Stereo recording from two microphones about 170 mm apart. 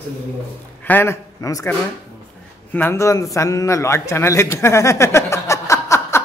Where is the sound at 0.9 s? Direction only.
15° left (ahead or behind).